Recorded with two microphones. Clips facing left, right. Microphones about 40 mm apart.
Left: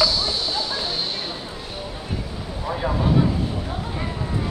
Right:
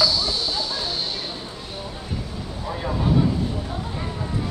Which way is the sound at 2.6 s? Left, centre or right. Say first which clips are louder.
Left 2 dB; centre.